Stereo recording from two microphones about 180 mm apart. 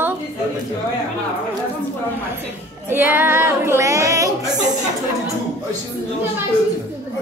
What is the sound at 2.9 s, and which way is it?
Female singing, 10° right (ahead or behind).